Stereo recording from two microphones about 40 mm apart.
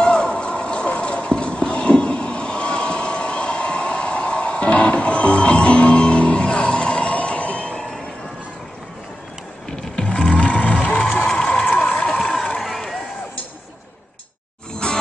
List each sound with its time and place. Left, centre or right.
0.0 s a sound: left
9.7 s vehicle: centre
10.0 s music: left
12.2 s run: centre
14.8 s music: left